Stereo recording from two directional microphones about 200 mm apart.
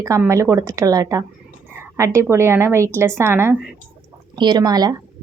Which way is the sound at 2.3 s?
15° right (ahead or behind).